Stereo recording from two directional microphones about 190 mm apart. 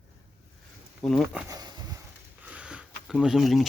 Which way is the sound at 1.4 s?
20° right (ahead or behind).